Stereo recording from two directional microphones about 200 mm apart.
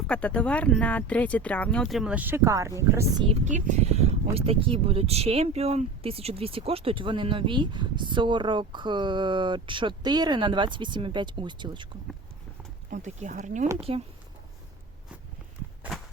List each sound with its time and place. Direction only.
0.1 s speech: 5° left (ahead or behind); by 3.1 s 15° right (ahead or behind)
3.2 s speech: 35° right (ahead or behind)
12.9 s speech: 35° right (ahead or behind)